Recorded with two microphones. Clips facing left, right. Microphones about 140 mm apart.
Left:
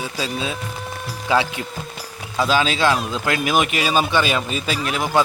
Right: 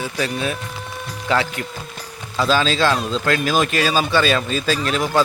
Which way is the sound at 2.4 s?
15° left (ahead or behind).